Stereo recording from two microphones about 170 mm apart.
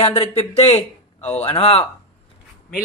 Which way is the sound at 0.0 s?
35° left (ahead or behind).